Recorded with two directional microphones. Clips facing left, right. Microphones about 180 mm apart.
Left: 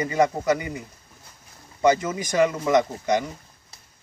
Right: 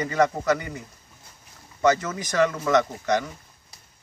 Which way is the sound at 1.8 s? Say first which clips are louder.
Left 1 dB; 10° left (ahead or behind).